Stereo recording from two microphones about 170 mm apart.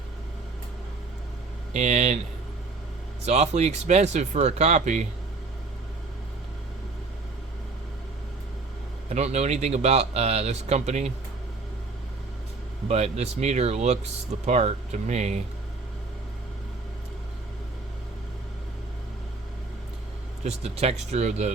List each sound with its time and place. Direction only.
1.7 s speech: 40° right (ahead or behind)
3.2 s speech: 40° right (ahead or behind)
9.0 s speech: 40° right (ahead or behind)
12.9 s speech: 40° right (ahead or behind)
20.4 s speech: 40° right (ahead or behind)